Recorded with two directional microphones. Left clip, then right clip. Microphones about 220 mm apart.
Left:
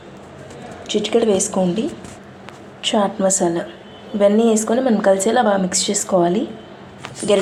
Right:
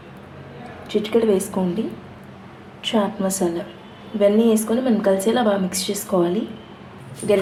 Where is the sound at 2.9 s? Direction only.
15° left (ahead or behind).